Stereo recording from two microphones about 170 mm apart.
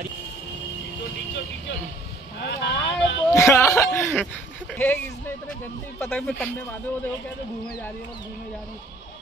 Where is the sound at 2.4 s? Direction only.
85° left.